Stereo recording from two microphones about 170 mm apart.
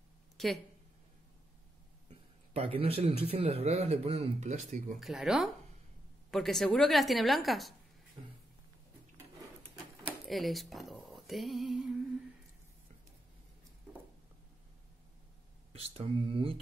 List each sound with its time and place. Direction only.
0.4 s speech: centre (ahead or behind)
2.0 s speech: 35° right (ahead or behind)
5.0 s a woman's voice: 5° right (ahead or behind)
10.0 s a sound: centre (ahead or behind)
15.7 s speech: 35° right (ahead or behind)